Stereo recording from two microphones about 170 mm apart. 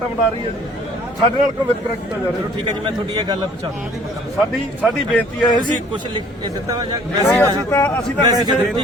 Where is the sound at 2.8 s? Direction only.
25° right (ahead or behind).